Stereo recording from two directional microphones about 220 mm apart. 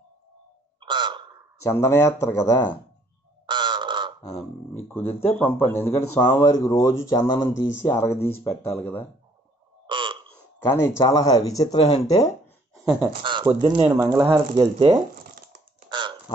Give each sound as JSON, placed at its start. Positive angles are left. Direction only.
{"t": 0.7, "sound": "a sound", "side_deg": -20}
{"t": 1.7, "sound": "speech", "side_deg": 10}
{"t": 3.4, "sound": "crow", "side_deg": -20}
{"t": 4.8, "sound": "speech", "side_deg": 10}
{"t": 9.8, "sound": "burping", "side_deg": -20}
{"t": 10.8, "sound": "speech", "side_deg": 15}
{"t": 12.7, "sound": "a sound", "side_deg": -10}
{"t": 13.2, "sound": "speech", "side_deg": -20}
{"t": 15.9, "sound": "a sound", "side_deg": -20}